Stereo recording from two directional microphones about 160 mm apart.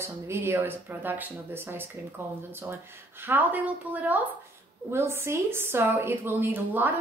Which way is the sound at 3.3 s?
10° right (ahead or behind).